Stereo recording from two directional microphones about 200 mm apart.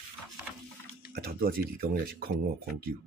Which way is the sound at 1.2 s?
50° right (ahead or behind).